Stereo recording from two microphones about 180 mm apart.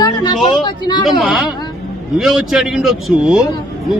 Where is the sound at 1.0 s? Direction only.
Centre (ahead or behind).